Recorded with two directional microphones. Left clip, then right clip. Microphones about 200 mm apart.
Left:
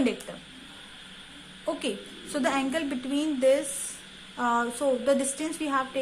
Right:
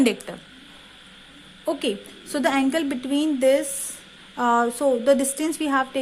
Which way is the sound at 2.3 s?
45° right (ahead or behind).